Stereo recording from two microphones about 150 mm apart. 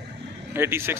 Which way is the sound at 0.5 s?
15° right (ahead or behind).